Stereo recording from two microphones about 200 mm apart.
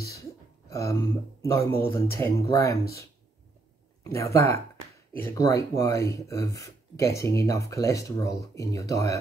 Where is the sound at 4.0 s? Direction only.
15° left (ahead or behind).